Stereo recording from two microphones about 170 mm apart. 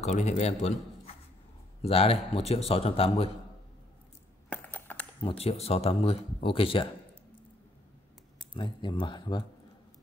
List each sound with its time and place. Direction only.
0.0 s speech: 45° left (ahead or behind)
4.5 s coin: 10° left (ahead or behind)
5.2 s speech: 35° left (ahead or behind)
8.5 s speech: 30° left (ahead or behind)